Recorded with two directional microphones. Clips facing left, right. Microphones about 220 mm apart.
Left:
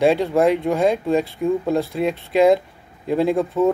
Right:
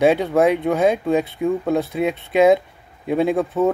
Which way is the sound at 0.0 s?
Centre (ahead or behind).